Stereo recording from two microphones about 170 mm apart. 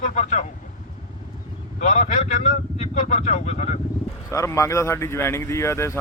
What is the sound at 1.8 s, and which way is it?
Speech, 45° left (ahead or behind).